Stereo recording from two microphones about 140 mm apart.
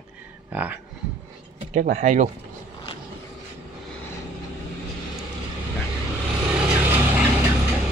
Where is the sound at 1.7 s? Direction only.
60° right (ahead or behind).